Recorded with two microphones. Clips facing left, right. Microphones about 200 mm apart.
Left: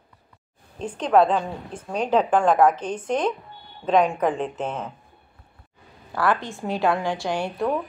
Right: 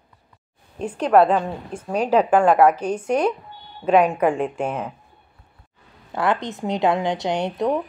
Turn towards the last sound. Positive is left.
turn(degrees=-20)  # may be behind; listen again after turning